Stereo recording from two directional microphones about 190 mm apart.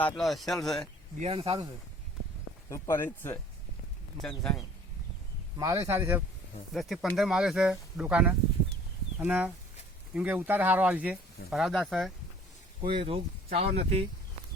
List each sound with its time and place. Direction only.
0.0 s speech: centre (ahead or behind)
1.2 s speech: 30° right (ahead or behind)
2.6 s speech: 15° left (ahead or behind)
5.5 s speech: 15° right (ahead or behind)
6.7 s speech: centre (ahead or behind)
12.8 s speech: 25° right (ahead or behind)